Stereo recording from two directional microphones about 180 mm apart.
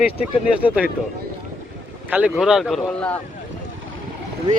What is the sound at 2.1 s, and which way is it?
Speech, 10° right (ahead or behind).